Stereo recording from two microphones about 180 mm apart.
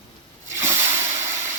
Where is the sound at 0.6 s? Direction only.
10° right (ahead or behind).